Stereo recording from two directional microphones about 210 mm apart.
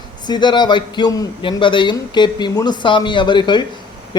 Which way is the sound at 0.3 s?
20° left (ahead or behind).